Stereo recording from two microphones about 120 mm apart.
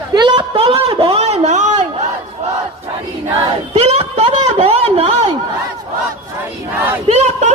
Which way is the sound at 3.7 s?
60° right (ahead or behind).